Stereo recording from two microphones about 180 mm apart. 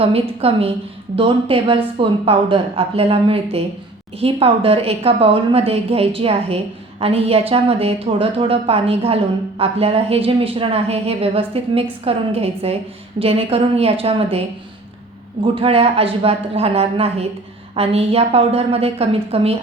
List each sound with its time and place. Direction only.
0.0 s a woman's voice: 35° right (ahead or behind)